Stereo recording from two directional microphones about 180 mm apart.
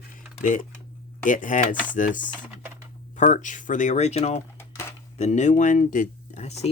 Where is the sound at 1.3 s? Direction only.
45° left (ahead or behind).